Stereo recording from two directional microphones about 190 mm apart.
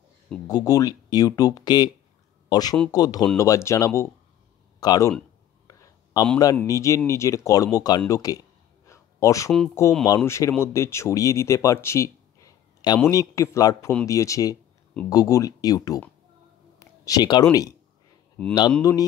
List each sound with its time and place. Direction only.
0.5 s speech: 20° left (ahead or behind)
5.7 s a sound: 20° left (ahead or behind)
6.5 s speech: 15° left (ahead or behind)
8.8 s a sound: 15° left (ahead or behind)
10.0 s speech: 15° left (ahead or behind)
17.0 s speech: 20° left (ahead or behind)
18.8 s speech: 15° left (ahead or behind)